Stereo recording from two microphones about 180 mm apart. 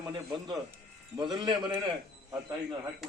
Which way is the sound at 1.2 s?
25° right (ahead or behind).